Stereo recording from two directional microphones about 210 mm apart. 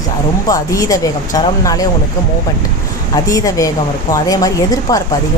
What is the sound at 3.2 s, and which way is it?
A woman's voice, 15° left (ahead or behind).